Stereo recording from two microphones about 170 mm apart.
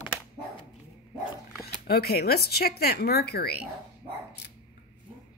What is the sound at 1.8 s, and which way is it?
Speech, 65° left (ahead or behind).